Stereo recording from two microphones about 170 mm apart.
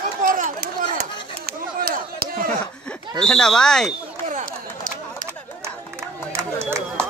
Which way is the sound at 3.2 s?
5° left (ahead or behind).